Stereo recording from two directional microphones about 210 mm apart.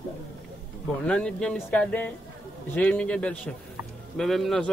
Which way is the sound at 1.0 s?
5° left (ahead or behind).